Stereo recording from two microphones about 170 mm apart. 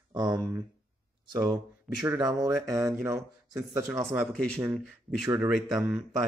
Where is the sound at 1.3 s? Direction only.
25° right (ahead or behind).